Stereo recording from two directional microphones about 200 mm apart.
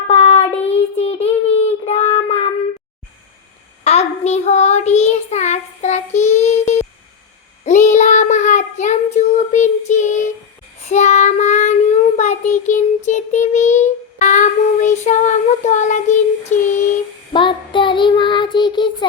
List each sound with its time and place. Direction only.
0.1 s child singing: 30° left (ahead or behind)
3.8 s child singing: 30° left (ahead or behind)
16.5 s a sound: 35° left (ahead or behind)
17.3 s child singing: 25° left (ahead or behind)